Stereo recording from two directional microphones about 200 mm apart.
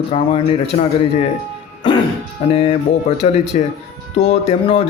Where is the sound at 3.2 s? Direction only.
35° left (ahead or behind).